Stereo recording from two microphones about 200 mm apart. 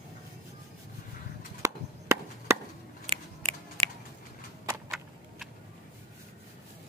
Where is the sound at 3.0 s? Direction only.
25° right (ahead or behind).